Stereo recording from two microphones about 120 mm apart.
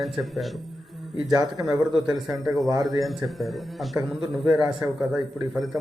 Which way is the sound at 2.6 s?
30° right (ahead or behind).